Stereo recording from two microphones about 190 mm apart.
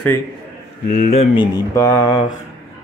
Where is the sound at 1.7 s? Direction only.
15° left (ahead or behind).